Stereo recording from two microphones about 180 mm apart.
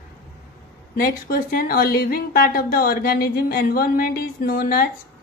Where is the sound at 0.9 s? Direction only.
55° left (ahead or behind).